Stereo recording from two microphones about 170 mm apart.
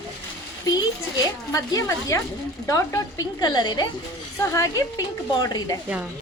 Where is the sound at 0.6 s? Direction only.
25° left (ahead or behind).